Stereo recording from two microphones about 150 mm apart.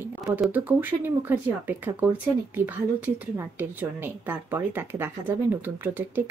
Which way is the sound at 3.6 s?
15° right (ahead or behind).